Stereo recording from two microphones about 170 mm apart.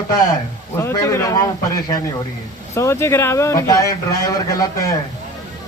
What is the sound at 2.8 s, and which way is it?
A man's voice, 15° left (ahead or behind).